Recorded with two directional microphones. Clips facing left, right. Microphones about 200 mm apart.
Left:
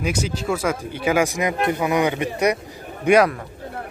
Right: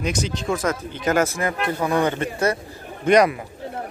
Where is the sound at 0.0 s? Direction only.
10° left (ahead or behind).